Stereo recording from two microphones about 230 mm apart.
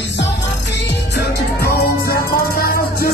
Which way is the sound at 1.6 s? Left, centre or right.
Left.